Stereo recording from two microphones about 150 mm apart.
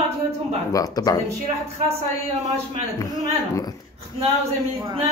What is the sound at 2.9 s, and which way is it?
Speech, 25° left (ahead or behind).